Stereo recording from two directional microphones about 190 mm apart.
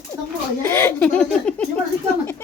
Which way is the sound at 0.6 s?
10° left (ahead or behind).